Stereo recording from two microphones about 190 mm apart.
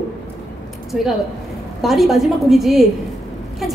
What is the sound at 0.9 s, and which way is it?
A woman's voice, 5° right (ahead or behind).